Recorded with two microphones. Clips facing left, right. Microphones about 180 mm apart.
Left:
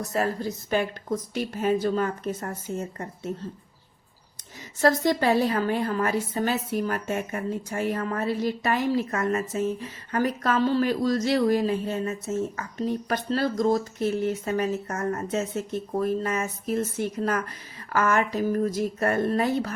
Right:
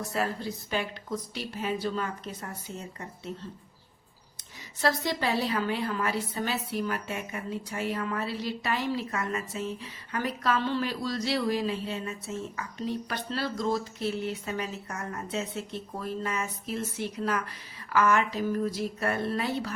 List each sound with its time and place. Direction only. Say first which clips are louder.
0.0 s a woman's voice: left 4 dB; 45° left (ahead or behind)
4.8 s a woman's voice: left 7 dB; 45° left (ahead or behind)